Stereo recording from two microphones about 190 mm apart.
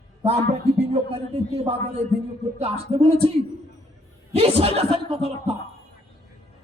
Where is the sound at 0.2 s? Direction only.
35° right (ahead or behind).